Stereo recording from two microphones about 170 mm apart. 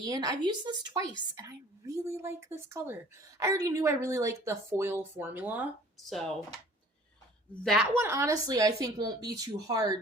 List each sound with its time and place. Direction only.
0.0 s a woman's voice: 20° right (ahead or behind)
6.1 s speech: centre (ahead or behind)
7.6 s speech: centre (ahead or behind)
7.9 s speech: 15° right (ahead or behind)